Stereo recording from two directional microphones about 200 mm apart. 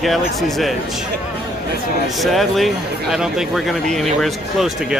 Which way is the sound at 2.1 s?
Centre (ahead or behind).